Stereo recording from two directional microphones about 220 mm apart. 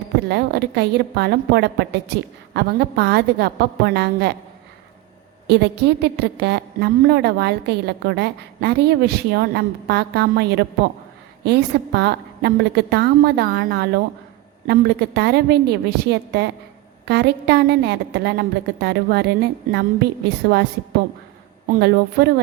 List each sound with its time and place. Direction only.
0.2 s a woman's voice: 50° right (ahead or behind)
5.5 s a woman's voice: 50° right (ahead or behind)
21.7 s a woman's voice: 50° right (ahead or behind)